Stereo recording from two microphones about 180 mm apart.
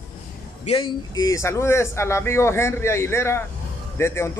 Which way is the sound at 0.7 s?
30° left (ahead or behind).